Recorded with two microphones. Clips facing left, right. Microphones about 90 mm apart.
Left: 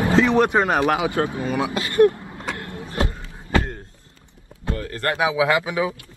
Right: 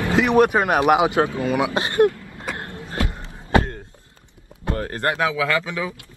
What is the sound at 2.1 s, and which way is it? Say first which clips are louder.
Vehicle: left 2 dB; 25° left (ahead or behind).